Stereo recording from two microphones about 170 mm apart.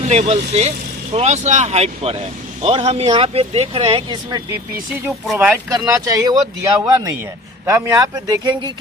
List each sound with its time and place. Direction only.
0.0 s speech: 40° right (ahead or behind); by 4.5 s 25° right (ahead or behind)
5.3 s speech: 5° right (ahead or behind)
5.7 s speech: 20° right (ahead or behind)